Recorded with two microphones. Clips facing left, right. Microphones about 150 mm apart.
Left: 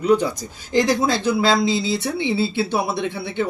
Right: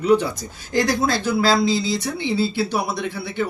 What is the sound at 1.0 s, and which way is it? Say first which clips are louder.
Speech: left 1 dB; 20° left (ahead or behind).